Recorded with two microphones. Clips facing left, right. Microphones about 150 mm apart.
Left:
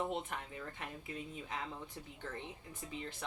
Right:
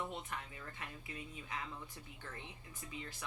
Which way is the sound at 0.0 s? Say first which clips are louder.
Left 5 dB; 45° left (ahead or behind).